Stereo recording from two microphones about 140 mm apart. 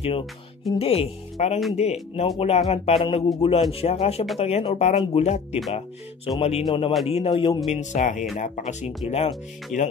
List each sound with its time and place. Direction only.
0.7 s a man's voice: 45° left (ahead or behind)
6.6 s a man's voice: 35° left (ahead or behind)
7.7 s speech: 60° left (ahead or behind)
9.7 s speech: centre (ahead or behind)